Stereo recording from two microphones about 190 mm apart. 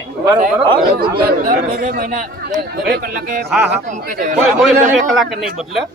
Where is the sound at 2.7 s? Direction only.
55° right (ahead or behind).